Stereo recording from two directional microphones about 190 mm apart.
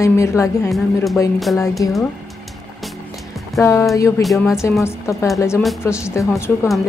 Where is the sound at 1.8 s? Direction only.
20° left (ahead or behind).